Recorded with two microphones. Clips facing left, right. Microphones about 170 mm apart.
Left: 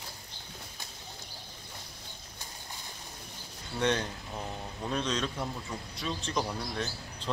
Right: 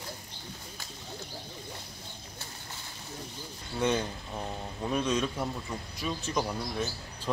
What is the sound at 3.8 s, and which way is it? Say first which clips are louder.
Speech: right 1 dB; 10° right (ahead or behind).